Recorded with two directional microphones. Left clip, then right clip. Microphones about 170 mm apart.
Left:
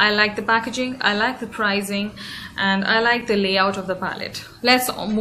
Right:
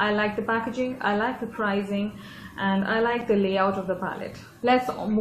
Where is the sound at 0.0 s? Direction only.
10° left (ahead or behind).